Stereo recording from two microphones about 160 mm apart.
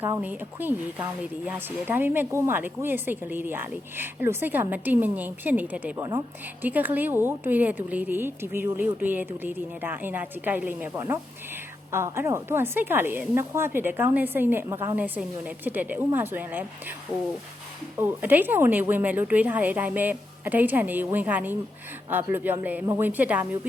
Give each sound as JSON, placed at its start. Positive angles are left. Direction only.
{"t": 0.2, "sound": "a woman's voice", "side_deg": -10}
{"t": 6.0, "sound": "a woman's voice", "side_deg": -25}
{"t": 6.6, "sound": "a woman's voice", "side_deg": -10}
{"t": 17.9, "sound": "a woman's voice", "side_deg": -10}